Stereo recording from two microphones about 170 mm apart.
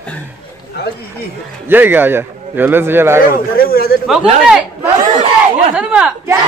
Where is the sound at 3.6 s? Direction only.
60° left (ahead or behind).